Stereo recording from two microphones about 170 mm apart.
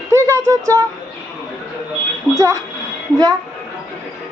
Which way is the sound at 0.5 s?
20° right (ahead or behind).